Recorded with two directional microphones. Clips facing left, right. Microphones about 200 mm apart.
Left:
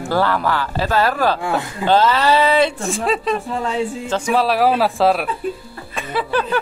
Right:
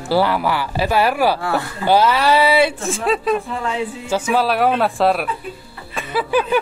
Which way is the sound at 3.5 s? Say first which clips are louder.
Left 2 dB; 35° left (ahead or behind).